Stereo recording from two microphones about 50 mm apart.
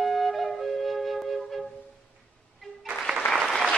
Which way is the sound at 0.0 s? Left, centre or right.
Centre.